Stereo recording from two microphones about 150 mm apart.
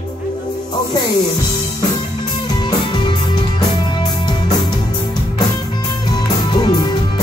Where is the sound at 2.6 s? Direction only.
30° left (ahead or behind).